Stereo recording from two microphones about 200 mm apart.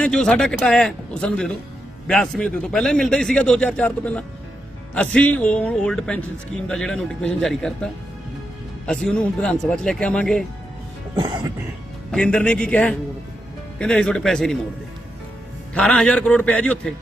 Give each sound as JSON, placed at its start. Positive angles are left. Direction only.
{"t": 0.0, "sound": "a man's voice", "side_deg": 5}
{"t": 11.1, "sound": "speech", "side_deg": -20}
{"t": 12.1, "sound": "a man's voice", "side_deg": 5}
{"t": 15.7, "sound": "a man's voice", "side_deg": 5}